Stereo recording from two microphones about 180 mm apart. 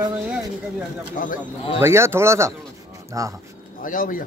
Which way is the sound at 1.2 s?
45° left (ahead or behind).